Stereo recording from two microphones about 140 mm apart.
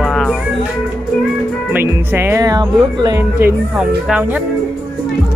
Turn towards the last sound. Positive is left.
turn(degrees=-10)  # may be behind; listen again after turning